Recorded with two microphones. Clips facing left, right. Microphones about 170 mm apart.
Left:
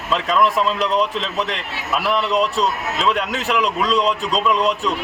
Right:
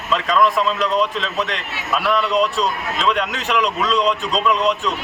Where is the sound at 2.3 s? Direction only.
Centre (ahead or behind).